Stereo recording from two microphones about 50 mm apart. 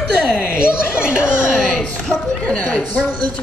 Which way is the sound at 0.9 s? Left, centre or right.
Right.